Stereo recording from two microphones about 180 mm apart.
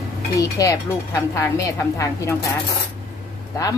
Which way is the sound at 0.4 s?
20° left (ahead or behind).